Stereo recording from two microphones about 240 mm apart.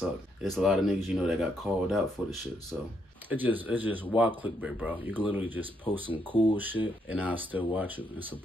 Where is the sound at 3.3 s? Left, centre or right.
Centre.